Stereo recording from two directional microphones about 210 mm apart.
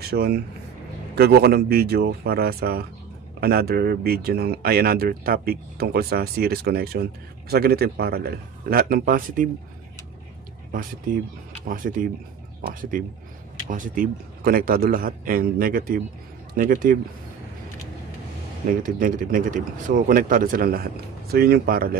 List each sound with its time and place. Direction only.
0.0 s speech: 50° right (ahead or behind)
10.7 s speech: 40° right (ahead or behind)
13.7 s speech: 40° right (ahead or behind)
18.7 s speech: 40° right (ahead or behind)